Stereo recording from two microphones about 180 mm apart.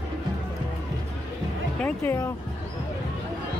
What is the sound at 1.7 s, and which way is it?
Music, 10° left (ahead or behind).